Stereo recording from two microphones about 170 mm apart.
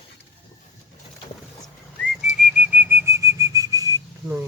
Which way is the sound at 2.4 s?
10° right (ahead or behind).